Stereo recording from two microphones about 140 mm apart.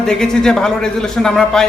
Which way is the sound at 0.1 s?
5° left (ahead or behind).